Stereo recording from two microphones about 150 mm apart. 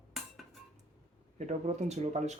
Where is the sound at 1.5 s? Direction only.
50° right (ahead or behind).